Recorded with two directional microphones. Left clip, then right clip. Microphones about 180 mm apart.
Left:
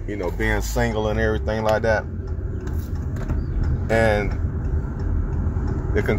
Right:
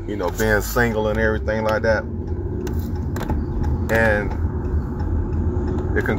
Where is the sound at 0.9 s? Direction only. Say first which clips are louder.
Right 2 dB; 25° left (ahead or behind).